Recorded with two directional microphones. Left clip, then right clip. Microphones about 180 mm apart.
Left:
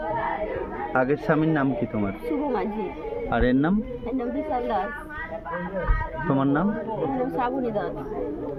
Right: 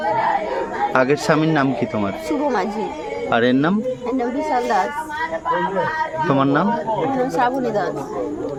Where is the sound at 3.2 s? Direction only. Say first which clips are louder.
Right 6 dB; 10° right (ahead or behind).